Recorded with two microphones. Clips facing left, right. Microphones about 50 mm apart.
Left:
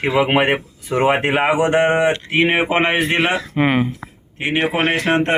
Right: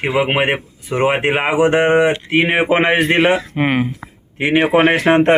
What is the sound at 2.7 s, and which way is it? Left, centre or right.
Speech, right.